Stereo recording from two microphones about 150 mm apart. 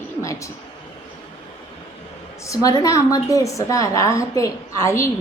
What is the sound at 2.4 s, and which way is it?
A woman's voice, 20° left (ahead or behind).